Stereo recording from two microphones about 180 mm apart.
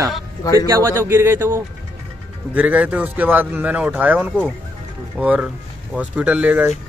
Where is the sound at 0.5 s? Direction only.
15° right (ahead or behind).